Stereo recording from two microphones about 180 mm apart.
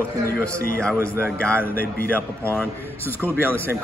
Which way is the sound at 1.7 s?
55° left (ahead or behind).